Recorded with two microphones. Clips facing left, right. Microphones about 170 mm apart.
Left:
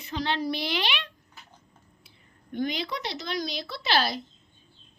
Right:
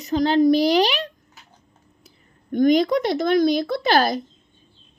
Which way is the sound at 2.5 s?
45° right (ahead or behind).